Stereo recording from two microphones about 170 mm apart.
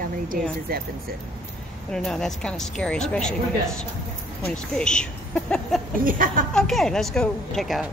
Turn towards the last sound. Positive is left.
turn(degrees=0)  # may be behind; listen again after turning